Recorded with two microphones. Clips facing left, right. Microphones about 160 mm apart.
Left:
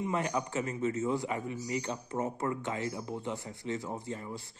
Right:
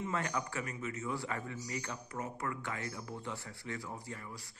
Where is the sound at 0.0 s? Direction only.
20° left (ahead or behind).